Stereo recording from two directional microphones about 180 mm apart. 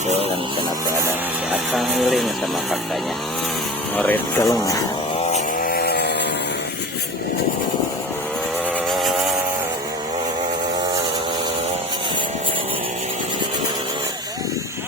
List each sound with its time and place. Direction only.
1.7 s speech: centre (ahead or behind)
3.9 s speech: 10° left (ahead or behind)
5.6 s chainsaw: 60° left (ahead or behind)